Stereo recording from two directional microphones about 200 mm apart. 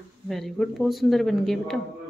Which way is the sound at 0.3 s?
Centre (ahead or behind).